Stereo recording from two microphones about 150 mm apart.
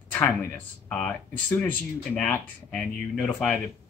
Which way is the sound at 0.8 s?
10° left (ahead or behind).